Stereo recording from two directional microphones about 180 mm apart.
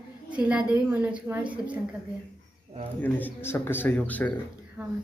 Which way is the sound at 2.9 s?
10° left (ahead or behind).